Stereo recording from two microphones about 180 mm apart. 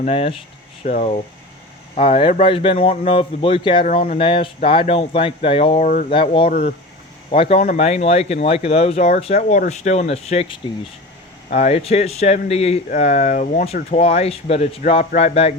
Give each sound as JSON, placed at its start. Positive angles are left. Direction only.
{"t": 0.0, "sound": "speech", "side_deg": 30}
{"t": 3.8, "sound": "speech", "side_deg": 40}
{"t": 6.5, "sound": "speech", "side_deg": 50}
{"t": 7.3, "sound": "speech", "side_deg": 30}